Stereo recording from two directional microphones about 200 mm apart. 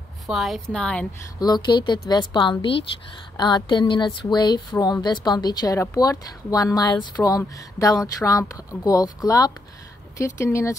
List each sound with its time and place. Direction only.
0.3 s a woman's voice: centre (ahead or behind)
1.4 s speech: 20° left (ahead or behind)